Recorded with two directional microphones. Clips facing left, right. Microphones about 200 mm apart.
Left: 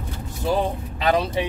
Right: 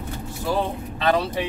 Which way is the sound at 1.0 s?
15° left (ahead or behind).